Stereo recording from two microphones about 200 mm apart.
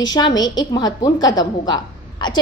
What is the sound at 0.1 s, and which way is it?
A woman's voice, 20° left (ahead or behind).